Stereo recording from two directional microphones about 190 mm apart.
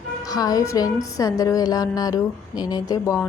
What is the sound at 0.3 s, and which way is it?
A woman's voice, 20° left (ahead or behind).